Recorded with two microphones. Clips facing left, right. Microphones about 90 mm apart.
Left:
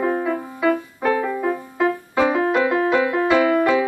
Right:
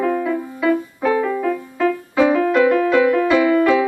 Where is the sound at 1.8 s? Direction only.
25° left (ahead or behind).